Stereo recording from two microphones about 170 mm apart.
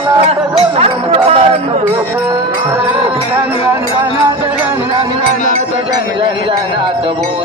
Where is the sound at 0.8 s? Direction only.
35° right (ahead or behind).